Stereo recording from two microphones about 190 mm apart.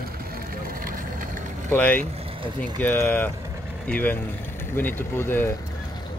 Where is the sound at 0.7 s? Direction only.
50° right (ahead or behind).